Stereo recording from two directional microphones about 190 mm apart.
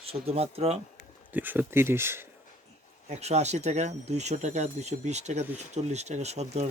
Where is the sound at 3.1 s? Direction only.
35° right (ahead or behind).